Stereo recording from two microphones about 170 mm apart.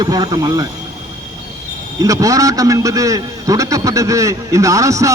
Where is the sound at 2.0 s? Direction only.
20° right (ahead or behind).